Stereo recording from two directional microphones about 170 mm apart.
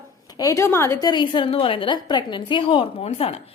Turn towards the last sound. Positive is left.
turn(degrees=35)  # may be behind; listen again after turning